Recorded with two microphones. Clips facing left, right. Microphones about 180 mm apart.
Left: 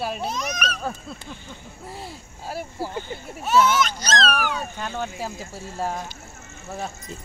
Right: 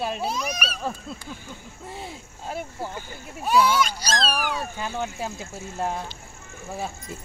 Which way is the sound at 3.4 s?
10° right (ahead or behind).